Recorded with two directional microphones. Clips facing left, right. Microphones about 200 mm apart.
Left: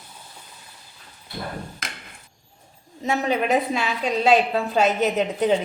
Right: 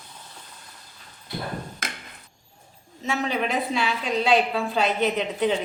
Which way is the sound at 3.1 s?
45° left (ahead or behind).